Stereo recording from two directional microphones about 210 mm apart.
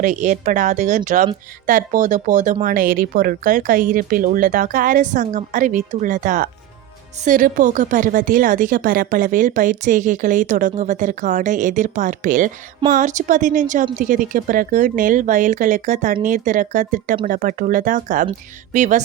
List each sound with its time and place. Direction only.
0.0 s a woman's voice: 35° right (ahead or behind)